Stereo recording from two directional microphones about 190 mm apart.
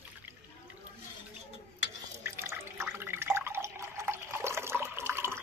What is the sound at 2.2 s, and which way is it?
Drip, 15° right (ahead or behind).